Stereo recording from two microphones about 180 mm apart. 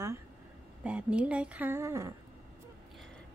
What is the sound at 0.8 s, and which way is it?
Speech, 5° right (ahead or behind).